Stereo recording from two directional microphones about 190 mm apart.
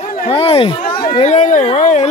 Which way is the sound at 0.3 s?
30° left (ahead or behind).